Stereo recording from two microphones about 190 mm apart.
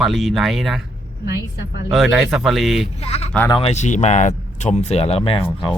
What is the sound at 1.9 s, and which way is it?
Speech, centre (ahead or behind).